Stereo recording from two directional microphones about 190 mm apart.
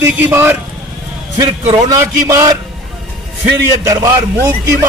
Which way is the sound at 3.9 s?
15° right (ahead or behind).